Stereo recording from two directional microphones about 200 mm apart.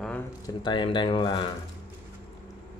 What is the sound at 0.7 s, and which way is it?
Speech, 25° left (ahead or behind).